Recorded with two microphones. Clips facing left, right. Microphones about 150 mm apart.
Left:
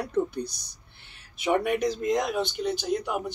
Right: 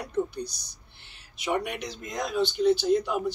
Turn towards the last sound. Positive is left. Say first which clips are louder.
# right 4 dB
turn(degrees=15)  # may be behind; listen again after turning